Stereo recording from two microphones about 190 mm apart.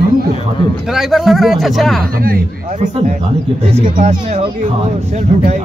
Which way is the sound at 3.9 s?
35° right (ahead or behind).